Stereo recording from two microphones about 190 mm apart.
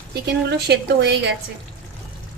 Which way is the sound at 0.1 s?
60° right (ahead or behind).